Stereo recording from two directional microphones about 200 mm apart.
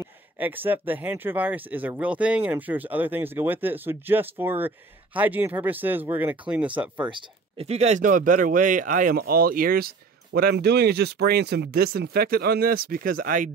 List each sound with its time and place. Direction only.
0.0 s speech: 10° right (ahead or behind)
7.1 s speech: 25° right (ahead or behind); by 13.5 s 45° right (ahead or behind)